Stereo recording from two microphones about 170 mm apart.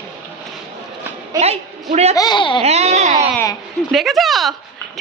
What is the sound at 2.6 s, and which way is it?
Baby cry, 40° right (ahead or behind).